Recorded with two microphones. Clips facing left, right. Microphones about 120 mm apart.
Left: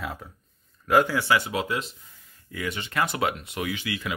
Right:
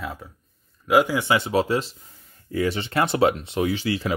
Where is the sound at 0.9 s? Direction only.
15° right (ahead or behind).